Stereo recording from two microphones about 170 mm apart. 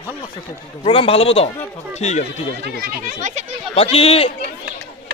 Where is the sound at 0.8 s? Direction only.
30° left (ahead or behind).